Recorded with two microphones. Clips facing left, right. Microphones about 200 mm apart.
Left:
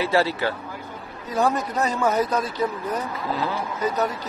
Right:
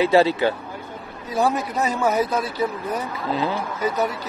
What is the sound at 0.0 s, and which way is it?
Speech, 20° right (ahead or behind).